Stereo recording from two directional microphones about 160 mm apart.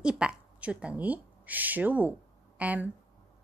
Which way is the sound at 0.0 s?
5° right (ahead or behind).